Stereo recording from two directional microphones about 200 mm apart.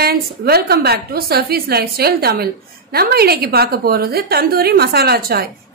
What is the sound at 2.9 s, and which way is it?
A woman's voice, 50° right (ahead or behind).